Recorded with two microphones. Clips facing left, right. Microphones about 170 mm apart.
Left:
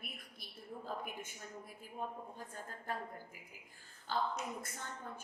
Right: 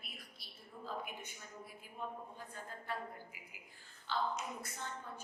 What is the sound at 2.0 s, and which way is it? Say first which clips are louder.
Speech: left 1 dB; 45° left (ahead or behind).